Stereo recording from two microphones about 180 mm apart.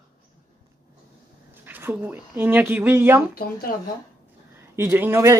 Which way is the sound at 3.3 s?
55° left (ahead or behind).